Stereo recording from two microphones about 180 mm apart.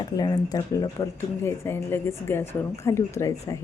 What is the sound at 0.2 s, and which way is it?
A woman's voice, 20° left (ahead or behind).